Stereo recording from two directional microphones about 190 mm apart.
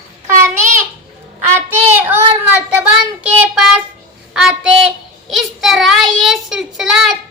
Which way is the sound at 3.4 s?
5° right (ahead or behind).